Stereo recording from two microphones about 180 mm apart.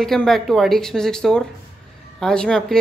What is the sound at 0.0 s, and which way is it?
Speech, centre (ahead or behind).